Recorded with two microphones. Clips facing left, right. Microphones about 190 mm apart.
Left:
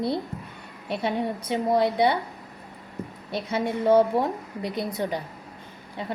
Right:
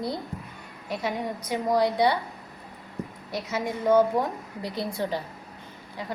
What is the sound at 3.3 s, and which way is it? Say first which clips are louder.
A woman's voice: left 3 dB; 30° left (ahead or behind).